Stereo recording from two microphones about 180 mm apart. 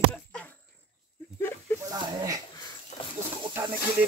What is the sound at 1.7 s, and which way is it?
Speech, 20° right (ahead or behind).